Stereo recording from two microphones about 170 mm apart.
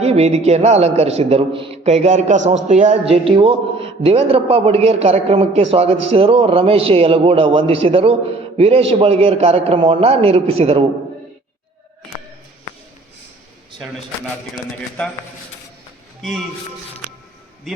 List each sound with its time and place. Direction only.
0.0 s a man's voice: 40° right (ahead or behind)
14.5 s a man's voice: 5° left (ahead or behind)